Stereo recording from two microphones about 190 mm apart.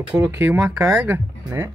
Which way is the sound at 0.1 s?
10° right (ahead or behind).